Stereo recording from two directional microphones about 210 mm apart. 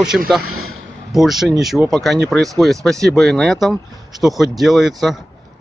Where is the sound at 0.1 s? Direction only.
Centre (ahead or behind).